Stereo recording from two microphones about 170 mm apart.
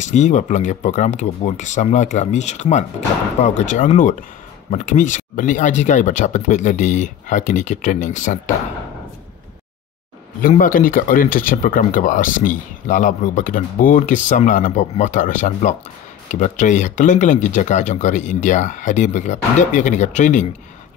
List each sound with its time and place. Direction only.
0.0 s speech: 45° left (ahead or behind)
10.6 s speech: 55° left (ahead or behind)